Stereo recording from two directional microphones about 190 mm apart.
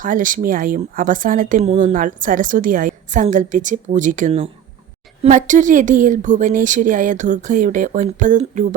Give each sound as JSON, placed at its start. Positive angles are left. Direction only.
{"t": 0.0, "sound": "a woman's voice", "side_deg": -45}